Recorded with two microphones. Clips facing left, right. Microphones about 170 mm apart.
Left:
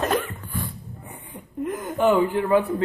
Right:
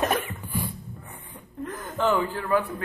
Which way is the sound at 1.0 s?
15° left (ahead or behind).